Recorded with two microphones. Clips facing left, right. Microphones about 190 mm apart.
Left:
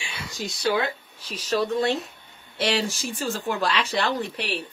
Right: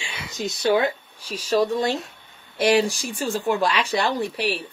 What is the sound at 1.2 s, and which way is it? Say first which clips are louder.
A woman's voice: right 4 dB; 10° right (ahead or behind).